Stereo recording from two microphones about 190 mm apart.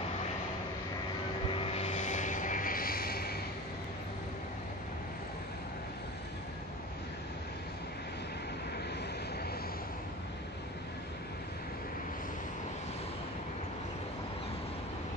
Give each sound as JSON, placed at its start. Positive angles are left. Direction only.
{"t": 1.5, "sound": "vehicle", "side_deg": 30}